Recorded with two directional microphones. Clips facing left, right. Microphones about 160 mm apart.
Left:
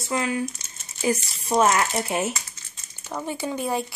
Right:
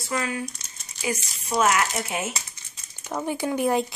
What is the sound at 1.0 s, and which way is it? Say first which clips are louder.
Speech: left 5 dB; 40° left (ahead or behind).